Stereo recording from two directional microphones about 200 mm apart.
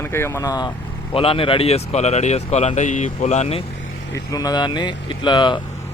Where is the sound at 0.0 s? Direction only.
10° left (ahead or behind); by 3.6 s 35° left (ahead or behind).